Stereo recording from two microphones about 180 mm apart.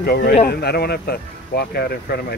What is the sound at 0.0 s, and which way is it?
Speech, 55° left (ahead or behind).